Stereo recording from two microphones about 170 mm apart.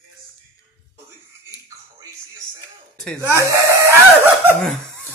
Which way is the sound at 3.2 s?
15° right (ahead or behind).